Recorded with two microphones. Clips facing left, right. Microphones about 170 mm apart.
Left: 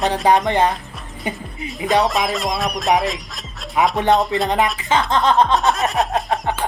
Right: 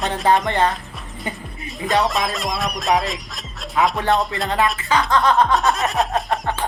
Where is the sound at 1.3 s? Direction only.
20° left (ahead or behind).